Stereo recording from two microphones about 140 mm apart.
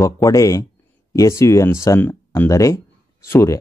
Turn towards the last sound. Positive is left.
turn(degrees=20)  # may be behind; listen again after turning